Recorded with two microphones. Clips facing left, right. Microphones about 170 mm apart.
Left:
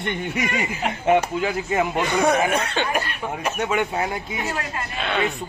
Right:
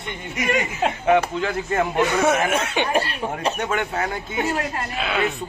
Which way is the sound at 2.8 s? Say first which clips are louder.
Right 3 dB; 30° right (ahead or behind).